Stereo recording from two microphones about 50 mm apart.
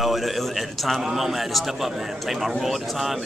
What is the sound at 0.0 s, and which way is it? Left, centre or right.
Speech, centre.